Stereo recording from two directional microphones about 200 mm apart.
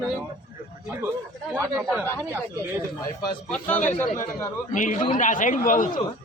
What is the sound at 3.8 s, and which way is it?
Speech, 10° left (ahead or behind).